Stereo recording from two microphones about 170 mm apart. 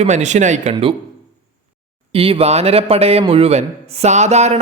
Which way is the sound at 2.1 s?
30° right (ahead or behind).